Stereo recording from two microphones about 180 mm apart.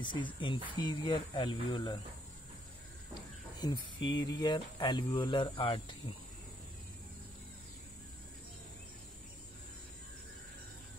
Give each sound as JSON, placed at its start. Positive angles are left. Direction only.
{"t": 0.0, "sound": "speech", "side_deg": 25}
{"t": 3.5, "sound": "speech", "side_deg": 25}